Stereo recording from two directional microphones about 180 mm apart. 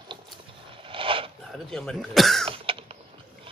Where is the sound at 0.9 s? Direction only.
30° right (ahead or behind).